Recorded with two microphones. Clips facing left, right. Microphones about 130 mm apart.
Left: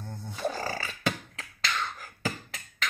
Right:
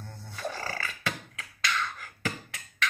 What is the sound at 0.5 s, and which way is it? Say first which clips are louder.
Beatboxing: left 3 dB; 35° left (ahead or behind).